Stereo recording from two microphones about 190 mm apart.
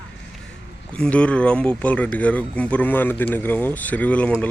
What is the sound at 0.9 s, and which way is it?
Speech, 5° left (ahead or behind).